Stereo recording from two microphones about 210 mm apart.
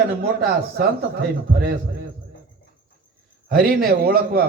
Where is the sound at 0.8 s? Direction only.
50° right (ahead or behind).